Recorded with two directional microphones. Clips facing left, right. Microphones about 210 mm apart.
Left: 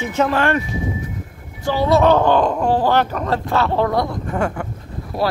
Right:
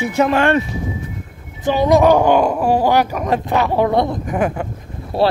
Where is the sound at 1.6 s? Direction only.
20° right (ahead or behind).